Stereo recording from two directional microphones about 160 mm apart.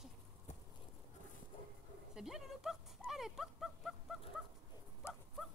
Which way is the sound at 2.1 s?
Centre (ahead or behind).